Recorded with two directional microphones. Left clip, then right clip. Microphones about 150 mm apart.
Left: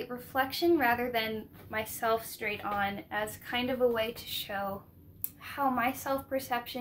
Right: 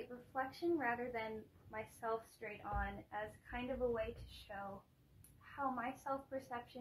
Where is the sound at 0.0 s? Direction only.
15° left (ahead or behind).